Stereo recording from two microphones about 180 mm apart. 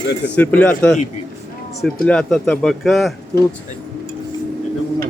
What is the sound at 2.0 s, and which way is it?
Speech, 5° left (ahead or behind).